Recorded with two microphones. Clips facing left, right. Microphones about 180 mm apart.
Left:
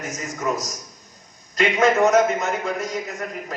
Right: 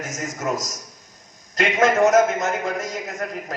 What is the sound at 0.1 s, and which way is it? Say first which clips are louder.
Speech: right 1 dB; 90° right.